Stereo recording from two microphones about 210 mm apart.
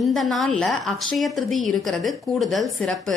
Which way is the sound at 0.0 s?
Centre (ahead or behind).